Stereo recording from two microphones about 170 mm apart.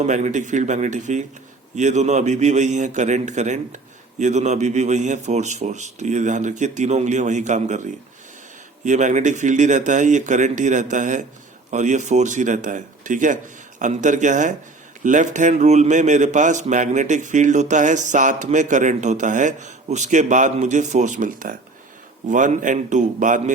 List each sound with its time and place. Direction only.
0.0 s a man's voice: 45° right (ahead or behind)
8.8 s a man's voice: 45° right (ahead or behind)